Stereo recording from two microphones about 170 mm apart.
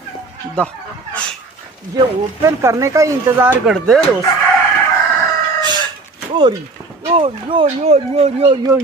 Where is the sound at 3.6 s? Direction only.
Centre (ahead or behind).